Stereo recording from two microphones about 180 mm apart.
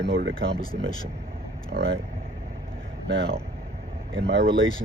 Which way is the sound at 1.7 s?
55° right (ahead or behind).